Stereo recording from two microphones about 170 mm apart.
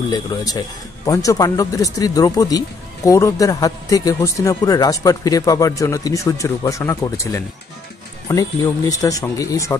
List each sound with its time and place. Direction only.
1.0 s speech: 20° left (ahead or behind)